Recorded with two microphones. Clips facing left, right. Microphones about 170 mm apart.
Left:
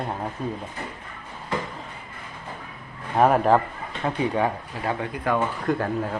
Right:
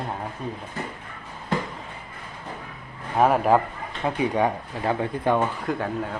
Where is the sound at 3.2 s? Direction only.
5° right (ahead or behind).